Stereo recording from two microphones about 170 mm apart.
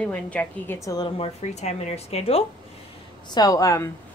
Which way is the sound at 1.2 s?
40° left (ahead or behind).